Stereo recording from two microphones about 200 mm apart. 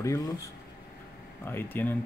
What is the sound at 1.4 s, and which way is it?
Speech, 10° left (ahead or behind).